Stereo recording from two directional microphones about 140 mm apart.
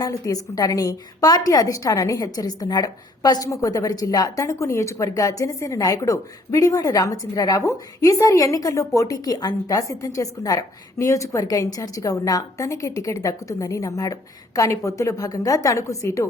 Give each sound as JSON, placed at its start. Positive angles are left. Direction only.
{"t": 0.0, "sound": "a woman's voice", "side_deg": 25}